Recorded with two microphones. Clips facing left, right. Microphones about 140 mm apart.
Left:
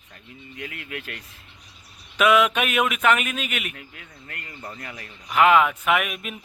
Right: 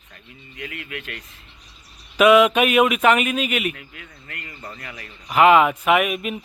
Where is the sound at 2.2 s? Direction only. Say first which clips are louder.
Right 5 dB; 10° right (ahead or behind).